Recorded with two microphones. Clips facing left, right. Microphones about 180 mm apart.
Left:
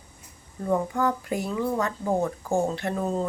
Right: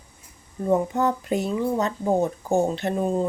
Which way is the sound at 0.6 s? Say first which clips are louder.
Right 3 dB; 20° right (ahead or behind).